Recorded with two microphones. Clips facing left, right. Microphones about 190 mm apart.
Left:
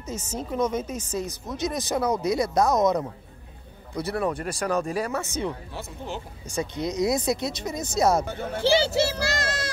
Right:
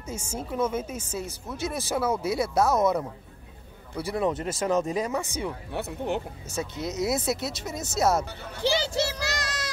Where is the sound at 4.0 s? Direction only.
15° right (ahead or behind).